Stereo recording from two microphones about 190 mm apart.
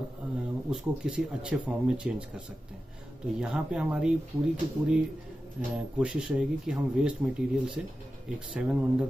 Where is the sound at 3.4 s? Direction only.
5° right (ahead or behind).